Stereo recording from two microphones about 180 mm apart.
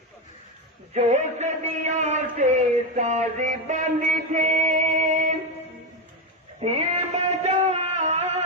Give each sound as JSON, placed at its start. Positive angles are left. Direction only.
{"t": 0.9, "sound": "a man's voice", "side_deg": -40}
{"t": 6.6, "sound": "a man's voice", "side_deg": -35}
{"t": 7.4, "sound": "a sound", "side_deg": -40}